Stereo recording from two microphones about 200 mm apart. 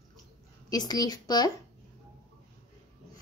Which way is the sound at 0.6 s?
20° left (ahead or behind).